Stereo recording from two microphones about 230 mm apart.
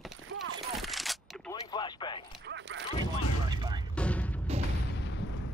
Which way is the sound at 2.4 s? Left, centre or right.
Right.